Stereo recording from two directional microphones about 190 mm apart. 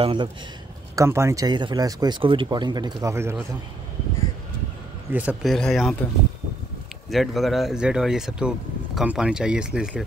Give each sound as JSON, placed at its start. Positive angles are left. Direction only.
{"t": 0.0, "sound": "speech", "side_deg": -25}
{"t": 0.9, "sound": "speech", "side_deg": -15}
{"t": 5.1, "sound": "speech", "side_deg": -5}
{"t": 7.1, "sound": "speech", "side_deg": 0}